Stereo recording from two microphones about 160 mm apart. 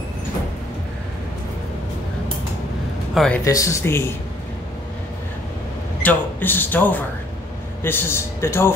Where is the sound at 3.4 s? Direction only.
20° left (ahead or behind).